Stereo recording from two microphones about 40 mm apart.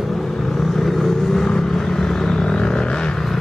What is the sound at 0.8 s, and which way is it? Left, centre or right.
Vehicle, centre.